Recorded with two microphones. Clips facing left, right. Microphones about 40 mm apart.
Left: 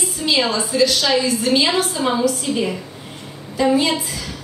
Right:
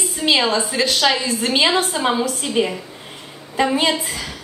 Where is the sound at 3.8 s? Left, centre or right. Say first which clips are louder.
Even; right.